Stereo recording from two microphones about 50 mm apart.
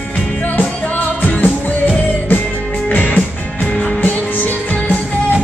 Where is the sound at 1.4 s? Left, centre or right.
Left.